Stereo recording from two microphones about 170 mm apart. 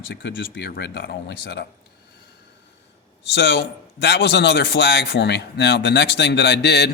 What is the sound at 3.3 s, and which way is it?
Speech, 80° left.